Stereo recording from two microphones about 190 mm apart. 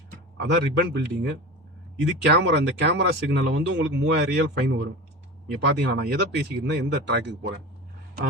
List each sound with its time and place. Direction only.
0.4 s speech: 65° right (ahead or behind)